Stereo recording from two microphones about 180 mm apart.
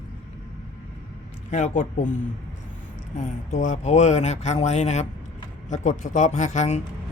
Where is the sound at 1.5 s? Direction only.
40° left (ahead or behind).